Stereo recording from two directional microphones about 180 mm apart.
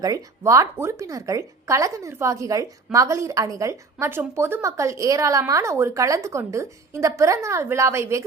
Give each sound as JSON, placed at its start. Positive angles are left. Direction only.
{"t": 0.0, "sound": "a woman's voice", "side_deg": -20}